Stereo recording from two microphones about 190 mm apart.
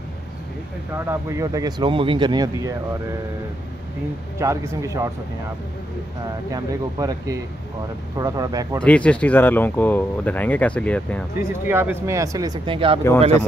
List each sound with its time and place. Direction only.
0.9 s speech: 15° right (ahead or behind)
4.4 s speech: 15° right (ahead or behind)
6.5 s speech: 20° right (ahead or behind)
8.8 s speech: 5° left (ahead or behind)
11.3 s speech: 10° right (ahead or behind); by 13.0 s 30° right (ahead or behind)